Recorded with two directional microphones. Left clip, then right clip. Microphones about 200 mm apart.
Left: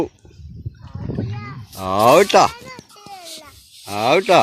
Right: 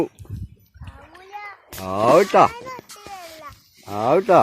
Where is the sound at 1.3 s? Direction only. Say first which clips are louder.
Right 1 dB; 40° right (ahead or behind).